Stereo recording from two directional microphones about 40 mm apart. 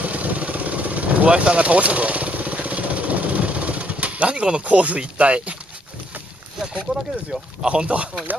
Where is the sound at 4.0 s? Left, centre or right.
Right.